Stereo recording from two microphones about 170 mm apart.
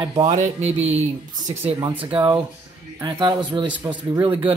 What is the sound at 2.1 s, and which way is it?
Speech, 25° right (ahead or behind).